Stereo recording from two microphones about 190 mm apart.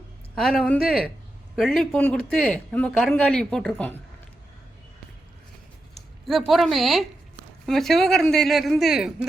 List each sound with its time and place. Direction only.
0.3 s a man's voice: 5° left (ahead or behind)
6.2 s a man's voice: centre (ahead or behind)